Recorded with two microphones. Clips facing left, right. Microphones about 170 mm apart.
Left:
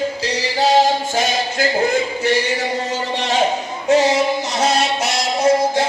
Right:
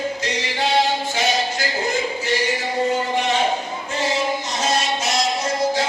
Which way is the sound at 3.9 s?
80° left.